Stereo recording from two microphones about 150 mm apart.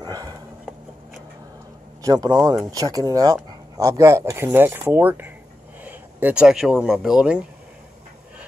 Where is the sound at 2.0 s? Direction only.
25° right (ahead or behind); by 7.4 s 5° right (ahead or behind).